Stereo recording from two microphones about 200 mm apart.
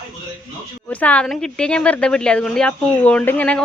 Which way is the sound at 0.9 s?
5° left (ahead or behind).